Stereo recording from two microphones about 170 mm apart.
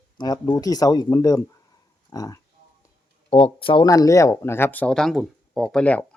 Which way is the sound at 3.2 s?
35° left (ahead or behind).